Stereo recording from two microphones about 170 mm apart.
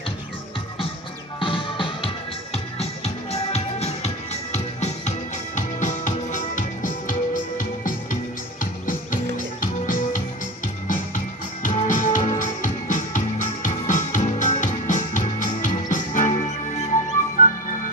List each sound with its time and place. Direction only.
1.4 s music: 30° left (ahead or behind); by 7.9 s 50° left (ahead or behind)
9.6 s music: 50° left (ahead or behind)
11.6 s music: 50° left (ahead or behind)